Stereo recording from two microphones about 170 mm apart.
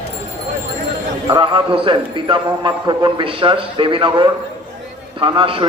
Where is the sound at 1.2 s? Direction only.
30° right (ahead or behind).